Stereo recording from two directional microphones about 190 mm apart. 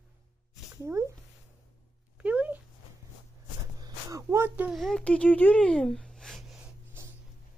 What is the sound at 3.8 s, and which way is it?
A child's voice, 15° right (ahead or behind).